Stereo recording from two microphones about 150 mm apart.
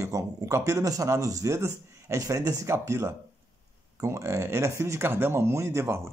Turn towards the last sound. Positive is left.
turn(degrees=-15)  # may be behind; listen again after turning